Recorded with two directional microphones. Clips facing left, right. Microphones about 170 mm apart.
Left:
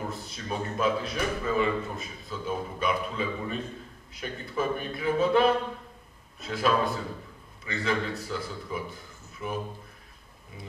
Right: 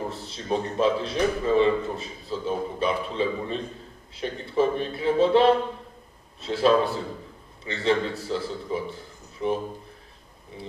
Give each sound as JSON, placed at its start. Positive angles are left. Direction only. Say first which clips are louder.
{"t": 0.1, "sound": "a man's voice", "louder": "right 6 dB", "side_deg": -30}